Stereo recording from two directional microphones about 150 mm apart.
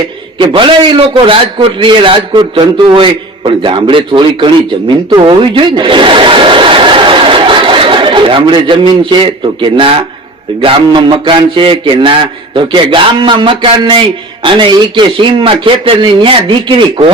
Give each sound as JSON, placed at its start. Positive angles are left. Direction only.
{"t": 0.3, "sound": "a man's voice", "side_deg": -30}